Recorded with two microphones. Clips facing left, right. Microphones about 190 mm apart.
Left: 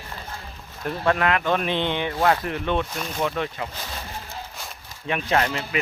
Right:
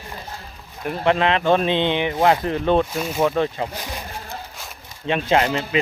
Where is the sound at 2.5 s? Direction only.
35° right (ahead or behind).